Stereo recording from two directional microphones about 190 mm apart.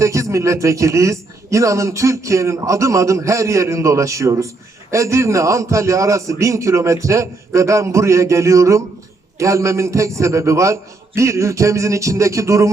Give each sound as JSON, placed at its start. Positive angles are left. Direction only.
{"t": 0.0, "sound": "a man's voice", "side_deg": -15}